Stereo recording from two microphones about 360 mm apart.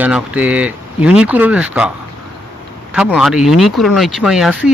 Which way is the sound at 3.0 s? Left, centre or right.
Centre.